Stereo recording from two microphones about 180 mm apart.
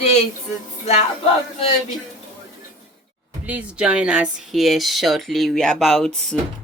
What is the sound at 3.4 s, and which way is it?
Speech, 10° right (ahead or behind).